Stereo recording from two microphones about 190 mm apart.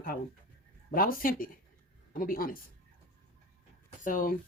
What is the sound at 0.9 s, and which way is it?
Speech, 50° left (ahead or behind).